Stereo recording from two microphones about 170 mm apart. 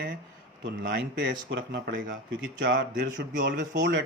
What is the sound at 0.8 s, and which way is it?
Speech, 90° right.